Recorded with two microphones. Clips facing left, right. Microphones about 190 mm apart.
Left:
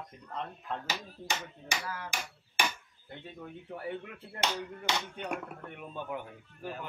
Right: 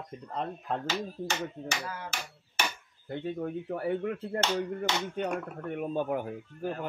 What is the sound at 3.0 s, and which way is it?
Speech, 50° right (ahead or behind).